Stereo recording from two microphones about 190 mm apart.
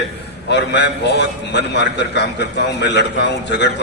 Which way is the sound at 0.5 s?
65° left (ahead or behind).